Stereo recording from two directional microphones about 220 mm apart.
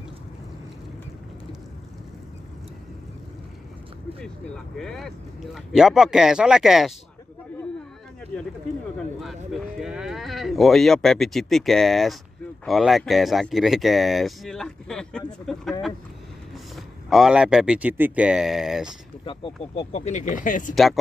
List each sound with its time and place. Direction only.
4.7 s speech: centre (ahead or behind)
9.5 s speech: centre (ahead or behind)
19.2 s speech: 25° left (ahead or behind)
20.7 s speech: centre (ahead or behind)